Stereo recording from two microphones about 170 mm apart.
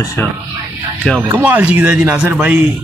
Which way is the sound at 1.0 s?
5° left (ahead or behind).